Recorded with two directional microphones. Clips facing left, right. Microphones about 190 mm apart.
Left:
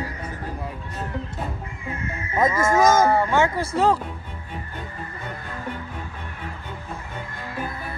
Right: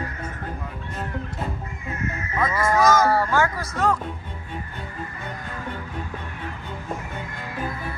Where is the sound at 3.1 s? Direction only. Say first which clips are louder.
Left 1 dB; 20° left (ahead or behind).